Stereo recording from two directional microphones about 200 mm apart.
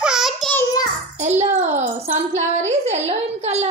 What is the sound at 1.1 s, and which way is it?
A child's voice, 35° right (ahead or behind).